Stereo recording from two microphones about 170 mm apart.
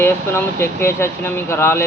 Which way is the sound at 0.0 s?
15° left (ahead or behind).